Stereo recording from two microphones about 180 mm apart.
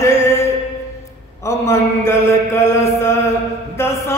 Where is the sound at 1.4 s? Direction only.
15° left (ahead or behind).